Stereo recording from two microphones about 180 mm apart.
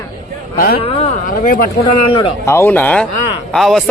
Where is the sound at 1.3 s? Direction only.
50° left (ahead or behind).